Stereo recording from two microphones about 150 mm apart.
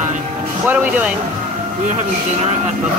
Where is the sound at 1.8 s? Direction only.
50° right (ahead or behind).